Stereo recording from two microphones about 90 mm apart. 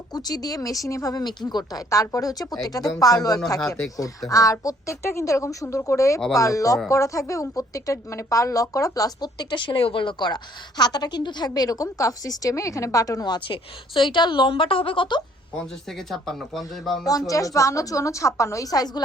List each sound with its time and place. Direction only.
0.1 s a woman's voice: 45° left (ahead or behind)
1.9 s a woman's voice: 40° left (ahead or behind)
13.5 s a woman's voice: 70° left (ahead or behind)
15.9 s speech: 5° left (ahead or behind)
17.1 s a woman's voice: 40° left (ahead or behind)